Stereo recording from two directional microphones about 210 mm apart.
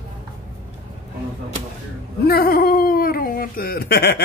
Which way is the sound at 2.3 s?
45° left (ahead or behind).